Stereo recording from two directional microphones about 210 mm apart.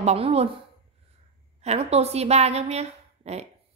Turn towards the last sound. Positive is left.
turn(degrees=-30)  # may be behind; listen again after turning